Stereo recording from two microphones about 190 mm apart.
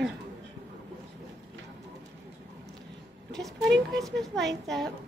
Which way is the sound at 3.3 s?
Centre (ahead or behind).